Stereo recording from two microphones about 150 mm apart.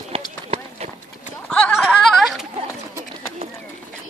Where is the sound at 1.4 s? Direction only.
5° left (ahead or behind).